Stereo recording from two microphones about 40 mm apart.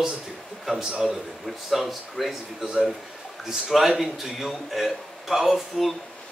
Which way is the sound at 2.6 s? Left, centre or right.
Centre.